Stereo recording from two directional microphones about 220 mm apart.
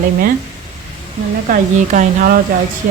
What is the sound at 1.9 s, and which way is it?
Speech, 35° right (ahead or behind).